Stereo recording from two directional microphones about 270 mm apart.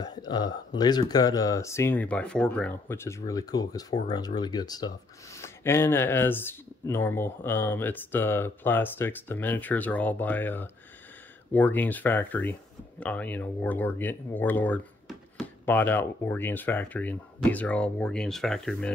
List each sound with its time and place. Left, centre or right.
0.0 s speech: centre